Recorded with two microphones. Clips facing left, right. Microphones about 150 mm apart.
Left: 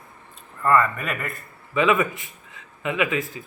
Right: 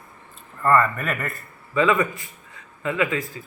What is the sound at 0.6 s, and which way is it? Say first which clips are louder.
Speech: right 1 dB; centre (ahead or behind).